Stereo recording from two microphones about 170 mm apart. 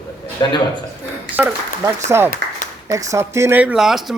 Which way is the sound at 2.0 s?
15° right (ahead or behind).